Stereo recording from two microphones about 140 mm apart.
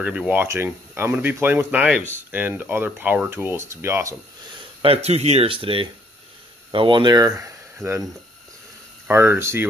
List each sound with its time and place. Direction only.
0.0 s speech: 10° right (ahead or behind)
4.8 s speech: 45° right (ahead or behind); by 9.7 s 15° right (ahead or behind)